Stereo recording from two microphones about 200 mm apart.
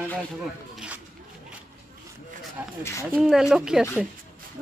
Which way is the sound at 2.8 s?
15° left (ahead or behind).